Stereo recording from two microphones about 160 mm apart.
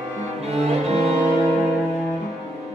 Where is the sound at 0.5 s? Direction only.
40° right (ahead or behind).